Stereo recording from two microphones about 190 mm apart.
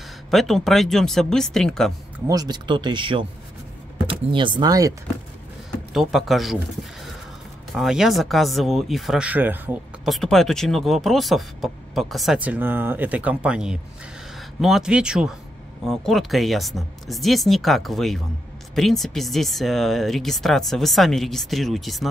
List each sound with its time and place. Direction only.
0.3 s speech: centre (ahead or behind)
2.2 s speech: 20° right (ahead or behind)
5.9 s speech: centre (ahead or behind)
10.0 s speech: centre (ahead or behind)